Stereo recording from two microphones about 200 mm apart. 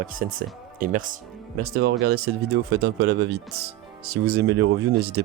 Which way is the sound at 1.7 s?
55° right (ahead or behind).